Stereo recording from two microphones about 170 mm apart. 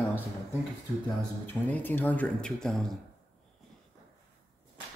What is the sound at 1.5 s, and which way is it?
Speech, 10° left (ahead or behind).